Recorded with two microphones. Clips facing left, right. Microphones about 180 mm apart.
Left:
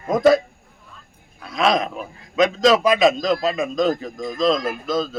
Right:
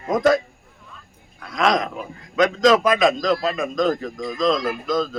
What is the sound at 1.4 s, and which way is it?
A man's voice, 30° left (ahead or behind).